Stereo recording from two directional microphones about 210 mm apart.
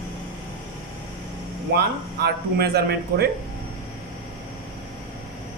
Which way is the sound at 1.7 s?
50° right (ahead or behind).